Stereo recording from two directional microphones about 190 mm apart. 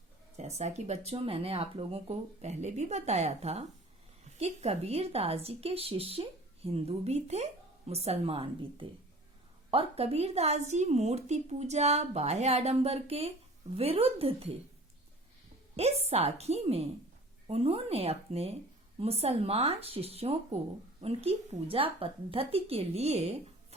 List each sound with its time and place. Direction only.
0.6 s speech: 35° right (ahead or behind)
15.7 s a woman's voice: 35° right (ahead or behind)